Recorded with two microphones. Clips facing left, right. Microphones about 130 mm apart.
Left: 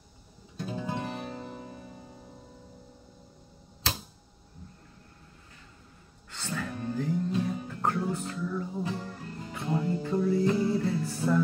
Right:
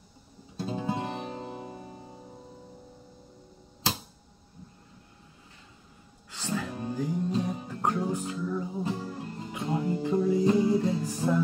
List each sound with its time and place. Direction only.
0.6 s music: 25° right (ahead or behind)
6.3 s music: 10° right (ahead or behind)